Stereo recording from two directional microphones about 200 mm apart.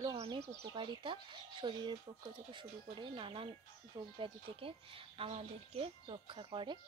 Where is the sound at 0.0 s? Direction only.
25° right (ahead or behind).